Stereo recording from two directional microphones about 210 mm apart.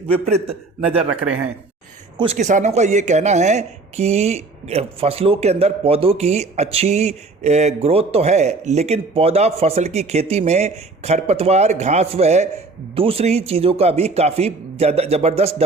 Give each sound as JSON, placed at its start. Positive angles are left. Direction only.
{"t": 0.1, "sound": "a man's voice", "side_deg": -30}
{"t": 2.1, "sound": "a man's voice", "side_deg": -30}